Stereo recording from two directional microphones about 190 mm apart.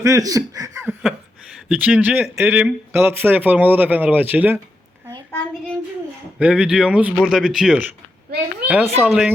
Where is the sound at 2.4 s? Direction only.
10° right (ahead or behind).